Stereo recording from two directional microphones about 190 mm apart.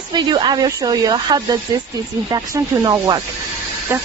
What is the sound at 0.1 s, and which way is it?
Speech, 25° right (ahead or behind).